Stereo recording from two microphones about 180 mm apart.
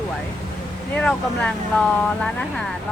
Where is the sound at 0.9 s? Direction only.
5° left (ahead or behind).